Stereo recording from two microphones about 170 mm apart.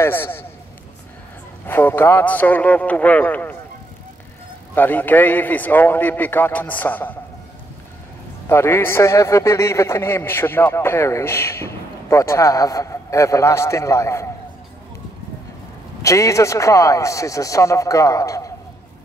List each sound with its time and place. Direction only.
0.0 s a man's voice: 15° left (ahead or behind)
1.7 s a man's voice: 10° left (ahead or behind)
4.7 s a man's voice: 10° left (ahead or behind)
8.5 s a man's voice: 15° left (ahead or behind)
16.0 s a man's voice: 20° left (ahead or behind)